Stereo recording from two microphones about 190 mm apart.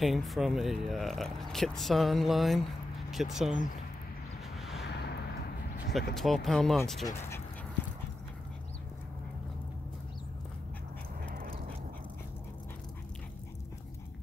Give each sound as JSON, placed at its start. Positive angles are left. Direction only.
{"t": 0.0, "sound": "speech", "side_deg": 0}
{"t": 4.6, "sound": "vehicle", "side_deg": 0}
{"t": 4.8, "sound": "a sound", "side_deg": 60}
{"t": 6.1, "sound": "speech", "side_deg": 0}
{"t": 7.1, "sound": "speech", "side_deg": 15}